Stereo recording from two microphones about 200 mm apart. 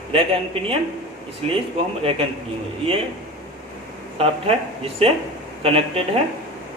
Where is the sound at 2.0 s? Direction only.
30° right (ahead or behind).